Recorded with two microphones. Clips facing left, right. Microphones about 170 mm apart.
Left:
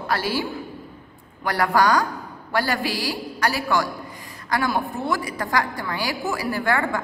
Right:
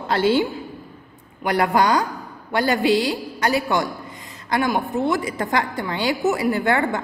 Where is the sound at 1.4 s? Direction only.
20° right (ahead or behind).